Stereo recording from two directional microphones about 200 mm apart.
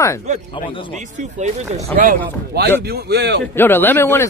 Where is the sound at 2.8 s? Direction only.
55° right (ahead or behind).